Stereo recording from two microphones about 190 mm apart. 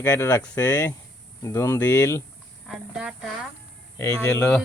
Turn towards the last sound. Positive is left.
turn(degrees=10)  # may be behind; listen again after turning